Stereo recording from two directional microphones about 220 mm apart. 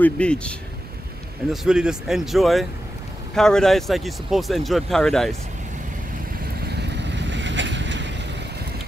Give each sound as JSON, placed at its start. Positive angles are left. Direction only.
{"t": 0.0, "sound": "speech", "side_deg": 5}
{"t": 6.7, "sound": "vehicle", "side_deg": -50}